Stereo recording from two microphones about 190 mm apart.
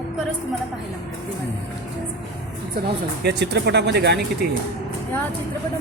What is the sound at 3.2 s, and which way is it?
Speech, 60° right (ahead or behind).